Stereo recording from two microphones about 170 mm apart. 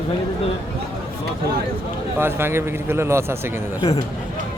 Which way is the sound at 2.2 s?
15° right (ahead or behind).